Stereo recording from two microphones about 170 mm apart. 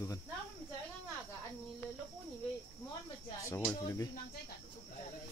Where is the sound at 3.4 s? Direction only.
15° left (ahead or behind).